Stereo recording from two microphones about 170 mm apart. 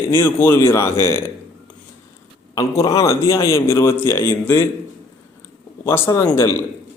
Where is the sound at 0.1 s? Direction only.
10° left (ahead or behind).